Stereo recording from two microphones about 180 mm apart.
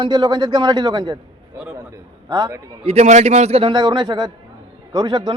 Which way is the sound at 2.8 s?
35° right (ahead or behind).